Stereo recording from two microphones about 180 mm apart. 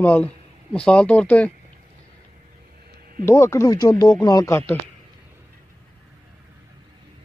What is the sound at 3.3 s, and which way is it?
Speech, 15° left (ahead or behind).